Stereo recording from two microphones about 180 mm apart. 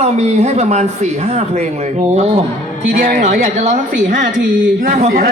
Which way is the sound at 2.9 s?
50° right (ahead or behind).